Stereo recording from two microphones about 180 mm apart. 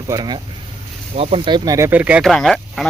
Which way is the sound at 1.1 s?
30° right (ahead or behind).